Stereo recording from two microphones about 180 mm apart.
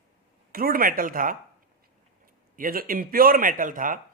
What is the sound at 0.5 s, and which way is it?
Speech, 55° right (ahead or behind).